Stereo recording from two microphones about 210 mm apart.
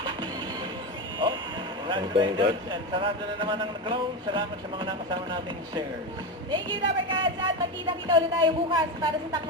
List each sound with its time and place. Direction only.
1.9 s speech: 25° right (ahead or behind)